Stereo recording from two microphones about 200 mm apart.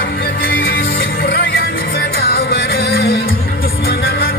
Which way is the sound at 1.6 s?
50° left (ahead or behind).